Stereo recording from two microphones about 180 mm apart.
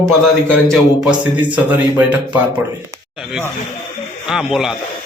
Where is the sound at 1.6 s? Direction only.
10° right (ahead or behind).